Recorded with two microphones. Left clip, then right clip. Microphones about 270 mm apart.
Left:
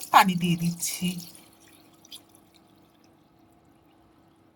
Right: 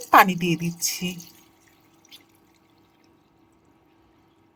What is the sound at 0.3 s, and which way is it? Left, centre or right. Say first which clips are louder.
Speech: right 4 dB; centre.